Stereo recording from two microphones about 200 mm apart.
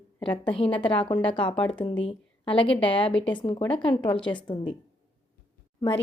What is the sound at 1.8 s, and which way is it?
A woman's voice, 25° left (ahead or behind).